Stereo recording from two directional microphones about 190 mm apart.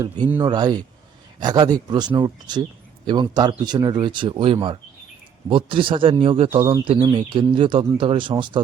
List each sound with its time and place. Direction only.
0.3 s speech: 15° right (ahead or behind)